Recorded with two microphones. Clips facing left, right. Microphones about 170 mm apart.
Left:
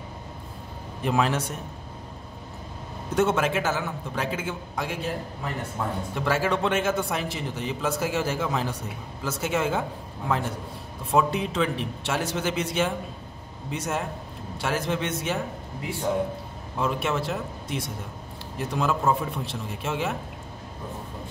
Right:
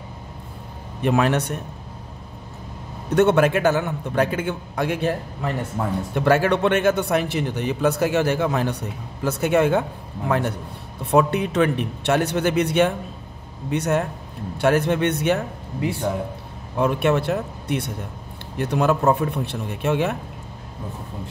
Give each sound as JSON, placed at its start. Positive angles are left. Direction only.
{"t": 1.0, "sound": "a man's voice", "side_deg": -60}
{"t": 3.2, "sound": "a man's voice", "side_deg": -65}
{"t": 16.8, "sound": "a man's voice", "side_deg": -65}